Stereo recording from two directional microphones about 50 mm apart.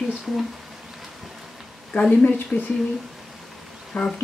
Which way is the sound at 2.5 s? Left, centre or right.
Left.